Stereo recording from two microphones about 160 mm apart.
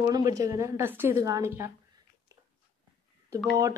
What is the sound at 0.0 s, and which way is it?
Speech, 20° right (ahead or behind).